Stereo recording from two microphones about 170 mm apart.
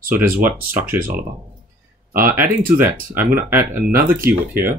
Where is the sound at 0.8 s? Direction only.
55° right (ahead or behind).